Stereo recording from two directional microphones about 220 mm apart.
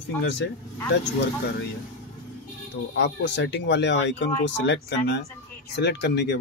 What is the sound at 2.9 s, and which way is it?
Speech, 55° left (ahead or behind).